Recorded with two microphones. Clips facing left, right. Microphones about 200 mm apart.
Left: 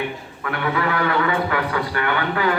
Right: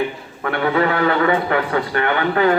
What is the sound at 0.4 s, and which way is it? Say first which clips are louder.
A man's voice: right 5 dB; 30° right (ahead or behind).